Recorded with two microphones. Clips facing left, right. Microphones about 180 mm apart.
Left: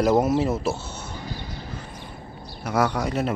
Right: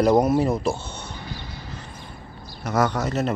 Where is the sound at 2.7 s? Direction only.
10° left (ahead or behind).